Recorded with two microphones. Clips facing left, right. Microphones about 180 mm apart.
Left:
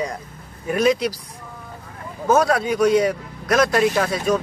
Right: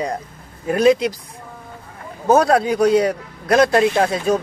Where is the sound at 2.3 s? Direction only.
30° right (ahead or behind).